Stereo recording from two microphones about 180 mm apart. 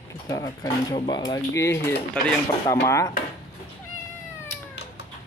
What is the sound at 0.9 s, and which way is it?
Speech, 25° left (ahead or behind).